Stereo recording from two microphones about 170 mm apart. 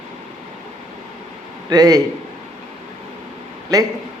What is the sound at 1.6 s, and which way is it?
Speech, 20° right (ahead or behind).